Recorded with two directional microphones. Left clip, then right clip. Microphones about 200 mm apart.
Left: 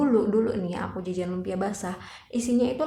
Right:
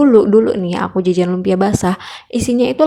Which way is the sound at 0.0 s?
40° right (ahead or behind).